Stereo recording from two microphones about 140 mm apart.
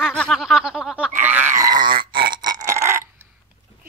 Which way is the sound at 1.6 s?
30° right (ahead or behind).